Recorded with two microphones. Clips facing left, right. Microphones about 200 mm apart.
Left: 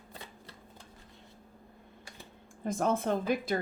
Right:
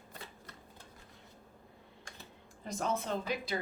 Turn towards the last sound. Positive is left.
turn(degrees=50)  # may be behind; listen again after turning